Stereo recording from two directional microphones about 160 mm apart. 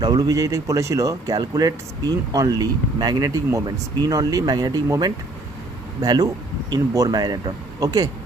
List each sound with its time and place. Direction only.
0.0 s speech: 25° right (ahead or behind)